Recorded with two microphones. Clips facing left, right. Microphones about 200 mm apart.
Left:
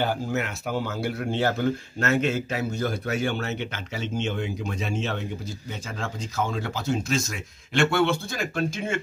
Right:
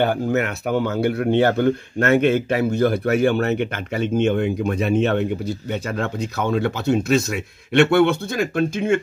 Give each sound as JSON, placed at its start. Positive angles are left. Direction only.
{"t": 0.0, "sound": "speech", "side_deg": -60}